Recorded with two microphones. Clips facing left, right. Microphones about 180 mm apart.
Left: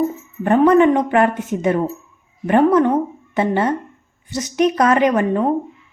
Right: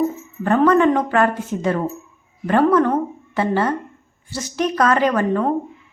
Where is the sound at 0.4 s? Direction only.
20° left (ahead or behind).